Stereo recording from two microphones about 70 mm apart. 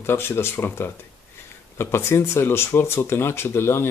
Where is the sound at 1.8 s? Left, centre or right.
Left.